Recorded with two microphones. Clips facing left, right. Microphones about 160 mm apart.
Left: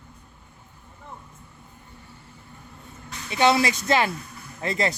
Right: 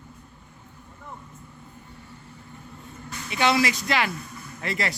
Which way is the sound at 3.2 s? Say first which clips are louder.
Left 2 dB; 25° left (ahead or behind).